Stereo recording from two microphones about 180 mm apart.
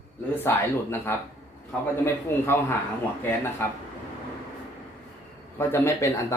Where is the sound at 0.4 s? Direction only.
10° left (ahead or behind).